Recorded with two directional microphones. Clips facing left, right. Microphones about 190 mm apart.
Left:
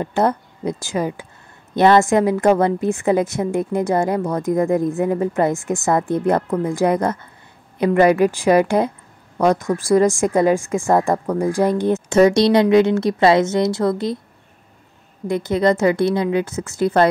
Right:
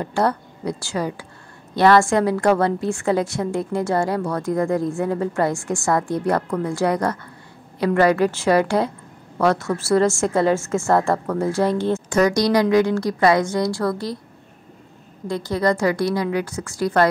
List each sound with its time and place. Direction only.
0.0 s a woman's voice: 20° left (ahead or behind)
15.2 s a woman's voice: 20° left (ahead or behind)